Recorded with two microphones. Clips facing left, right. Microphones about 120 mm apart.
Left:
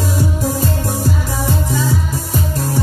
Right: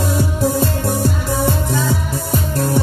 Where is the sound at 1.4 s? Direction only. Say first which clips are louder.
Left 1 dB; 60° right (ahead or behind).